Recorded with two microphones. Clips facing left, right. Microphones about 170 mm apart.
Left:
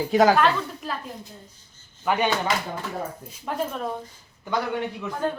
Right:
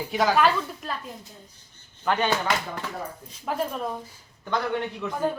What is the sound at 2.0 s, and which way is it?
Speech, 15° left (ahead or behind).